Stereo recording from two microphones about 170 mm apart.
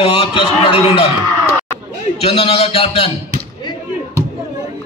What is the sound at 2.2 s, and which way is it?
Speech, 35° left (ahead or behind).